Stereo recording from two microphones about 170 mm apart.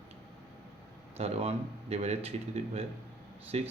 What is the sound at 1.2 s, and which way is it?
Speech, 35° right (ahead or behind).